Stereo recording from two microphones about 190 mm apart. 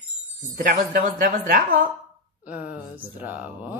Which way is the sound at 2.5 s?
10° right (ahead or behind).